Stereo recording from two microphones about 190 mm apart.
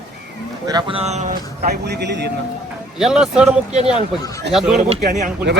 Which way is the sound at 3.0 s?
5° right (ahead or behind).